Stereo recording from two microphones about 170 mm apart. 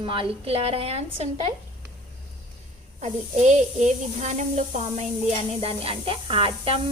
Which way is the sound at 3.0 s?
45° right (ahead or behind).